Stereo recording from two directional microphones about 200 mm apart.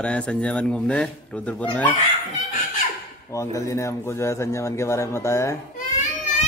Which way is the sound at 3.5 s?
15° left (ahead or behind).